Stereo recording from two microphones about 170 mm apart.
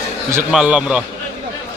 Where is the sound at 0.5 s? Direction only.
5° right (ahead or behind).